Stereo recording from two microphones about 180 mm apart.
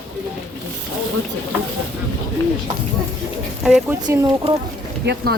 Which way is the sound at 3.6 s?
5° right (ahead or behind).